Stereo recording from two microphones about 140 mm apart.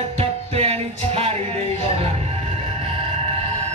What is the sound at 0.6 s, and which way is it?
Music, 45° right (ahead or behind).